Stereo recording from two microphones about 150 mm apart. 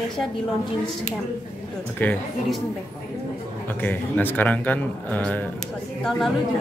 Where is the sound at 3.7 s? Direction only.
10° left (ahead or behind).